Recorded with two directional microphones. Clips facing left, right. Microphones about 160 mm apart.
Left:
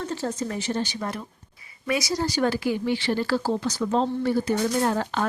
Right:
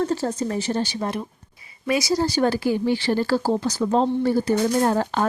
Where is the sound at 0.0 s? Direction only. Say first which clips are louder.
Right 5 dB; 40° right (ahead or behind).